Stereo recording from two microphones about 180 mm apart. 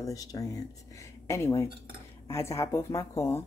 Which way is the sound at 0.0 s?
20° left (ahead or behind).